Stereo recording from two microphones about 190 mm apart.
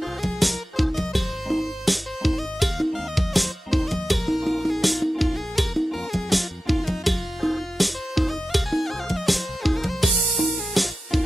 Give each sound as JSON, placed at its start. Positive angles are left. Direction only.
{"t": 0.2, "sound": "music", "side_deg": 0}